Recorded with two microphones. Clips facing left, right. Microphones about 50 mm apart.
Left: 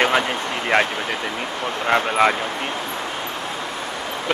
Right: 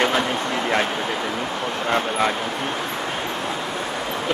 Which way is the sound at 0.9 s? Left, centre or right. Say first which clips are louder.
Right 1 dB; centre.